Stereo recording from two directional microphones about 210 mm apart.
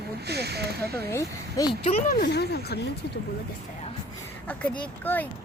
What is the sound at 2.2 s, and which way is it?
Speech, 50° left (ahead or behind).